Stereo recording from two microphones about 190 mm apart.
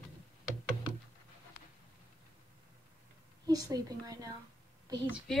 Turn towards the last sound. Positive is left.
turn(degrees=5)  # may be behind; listen again after turning